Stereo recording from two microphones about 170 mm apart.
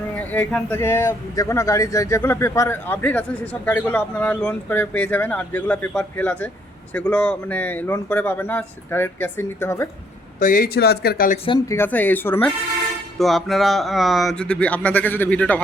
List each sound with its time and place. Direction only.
0.2 s speech: 10° left (ahead or behind)
10.4 s speech: 60° left (ahead or behind)
11.7 s speech: 10° left (ahead or behind)
13.1 s speech: centre (ahead or behind)